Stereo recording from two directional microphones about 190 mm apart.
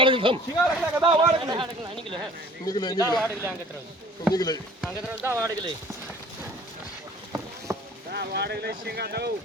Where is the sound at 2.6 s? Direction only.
25° left (ahead or behind).